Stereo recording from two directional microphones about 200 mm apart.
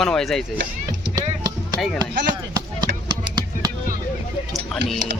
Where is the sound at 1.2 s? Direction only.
20° right (ahead or behind).